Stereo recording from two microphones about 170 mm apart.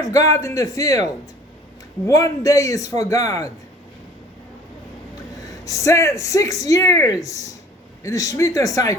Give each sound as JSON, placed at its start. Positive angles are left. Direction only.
{"t": 0.0, "sound": "speech", "side_deg": 20}
{"t": 5.5, "sound": "speech", "side_deg": 20}